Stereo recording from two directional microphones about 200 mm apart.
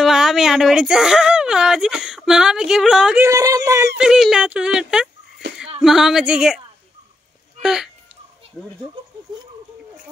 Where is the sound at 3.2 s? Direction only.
15° right (ahead or behind).